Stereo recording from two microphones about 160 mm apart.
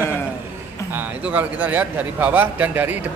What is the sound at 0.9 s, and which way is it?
A man's voice, 10° right (ahead or behind).